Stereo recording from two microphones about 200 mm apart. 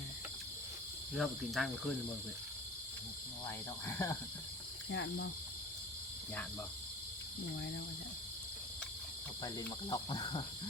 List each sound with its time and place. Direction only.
1.1 s cricket: centre (ahead or behind)
3.8 s speech: 15° left (ahead or behind)
4.9 s speech: 60° left (ahead or behind)
9.4 s cricket: 20° left (ahead or behind)